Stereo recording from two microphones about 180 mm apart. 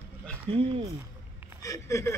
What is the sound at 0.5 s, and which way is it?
Speech, 35° right (ahead or behind).